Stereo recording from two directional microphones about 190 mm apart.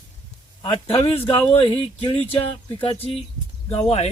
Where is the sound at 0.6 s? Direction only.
30° left (ahead or behind).